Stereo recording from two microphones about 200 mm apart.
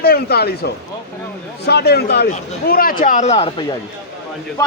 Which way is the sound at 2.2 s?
40° left (ahead or behind).